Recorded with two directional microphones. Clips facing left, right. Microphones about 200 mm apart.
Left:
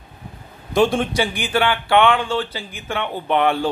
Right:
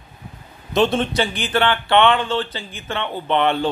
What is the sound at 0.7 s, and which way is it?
A man's voice, 10° left (ahead or behind).